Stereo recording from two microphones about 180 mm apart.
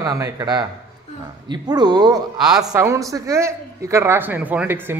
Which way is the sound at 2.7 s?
15° right (ahead or behind).